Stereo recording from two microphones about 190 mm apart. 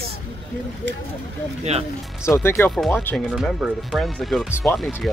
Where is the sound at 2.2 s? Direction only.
15° left (ahead or behind).